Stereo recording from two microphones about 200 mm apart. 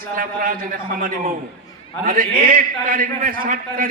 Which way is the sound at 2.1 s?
45° right (ahead or behind).